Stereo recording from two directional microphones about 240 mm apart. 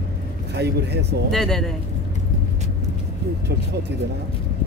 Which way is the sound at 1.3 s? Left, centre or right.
Centre.